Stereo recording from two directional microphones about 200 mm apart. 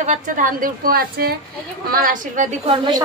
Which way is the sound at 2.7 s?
20° right (ahead or behind).